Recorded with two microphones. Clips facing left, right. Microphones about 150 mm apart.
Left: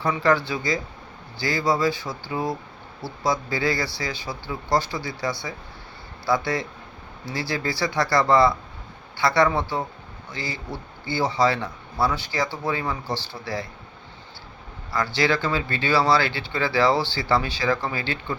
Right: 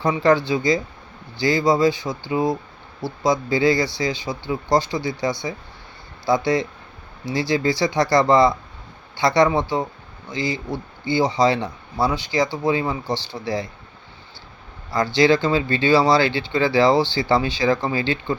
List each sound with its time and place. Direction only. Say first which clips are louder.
0.0 s speech: right 4 dB; 20° right (ahead or behind)
14.9 s speech: right 6 dB; 20° right (ahead or behind)